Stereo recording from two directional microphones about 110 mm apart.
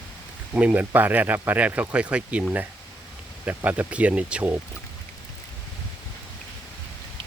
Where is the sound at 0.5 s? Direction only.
15° right (ahead or behind).